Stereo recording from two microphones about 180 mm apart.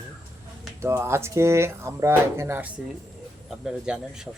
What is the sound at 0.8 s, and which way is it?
Speech, 15° right (ahead or behind).